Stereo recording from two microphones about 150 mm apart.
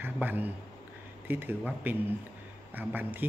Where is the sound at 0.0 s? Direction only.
10° right (ahead or behind).